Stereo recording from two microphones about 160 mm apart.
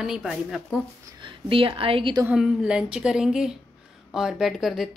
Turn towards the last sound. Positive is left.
turn(degrees=0)  # may be behind; listen again after turning